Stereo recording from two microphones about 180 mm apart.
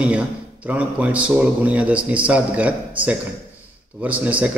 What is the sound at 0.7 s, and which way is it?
A man's voice, 5° right (ahead or behind).